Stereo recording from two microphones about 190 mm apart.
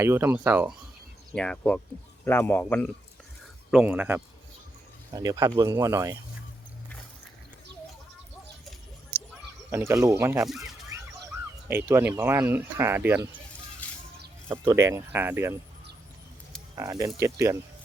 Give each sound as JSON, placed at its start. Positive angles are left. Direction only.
{"t": 0.0, "sound": "speech", "side_deg": -10}
{"t": 1.3, "sound": "a man's voice", "side_deg": 5}
{"t": 3.7, "sound": "speech", "side_deg": -5}
{"t": 5.1, "sound": "speech", "side_deg": -20}
{"t": 9.6, "sound": "speech", "side_deg": -15}
{"t": 10.4, "sound": "speech", "side_deg": 0}
{"t": 11.7, "sound": "speech", "side_deg": -10}
{"t": 13.8, "sound": "a sound", "side_deg": 10}
{"t": 14.4, "sound": "speech", "side_deg": -15}
{"t": 16.7, "sound": "speech", "side_deg": -15}